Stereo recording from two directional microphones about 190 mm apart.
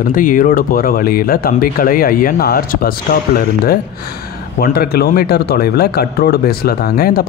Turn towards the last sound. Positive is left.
turn(degrees=50)  # may be behind; listen again after turning